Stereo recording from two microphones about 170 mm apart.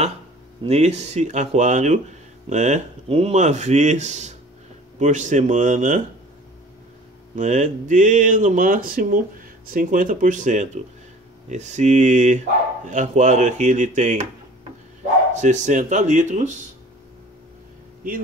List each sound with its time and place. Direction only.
0.7 s speech: 40° right (ahead or behind)
7.3 s speech: 45° right (ahead or behind)
15.3 s speech: 45° right (ahead or behind)